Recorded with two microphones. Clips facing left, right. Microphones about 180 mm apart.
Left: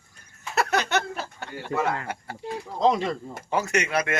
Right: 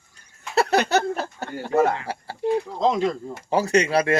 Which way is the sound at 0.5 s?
30° right (ahead or behind).